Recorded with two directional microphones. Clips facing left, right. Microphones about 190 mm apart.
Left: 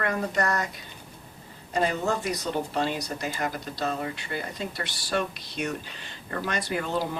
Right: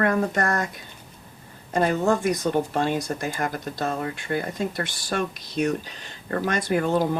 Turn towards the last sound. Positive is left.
turn(degrees=-50)  # may be behind; listen again after turning